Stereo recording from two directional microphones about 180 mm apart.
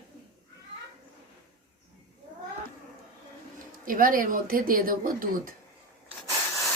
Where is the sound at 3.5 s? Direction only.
50° right (ahead or behind).